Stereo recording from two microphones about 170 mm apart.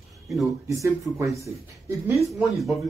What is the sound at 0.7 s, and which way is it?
Speech, 20° right (ahead or behind).